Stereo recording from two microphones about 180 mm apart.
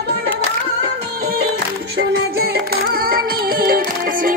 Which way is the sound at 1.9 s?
60° right (ahead or behind).